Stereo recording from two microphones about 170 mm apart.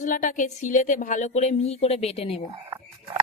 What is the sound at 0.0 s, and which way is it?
Speech, 50° left (ahead or behind).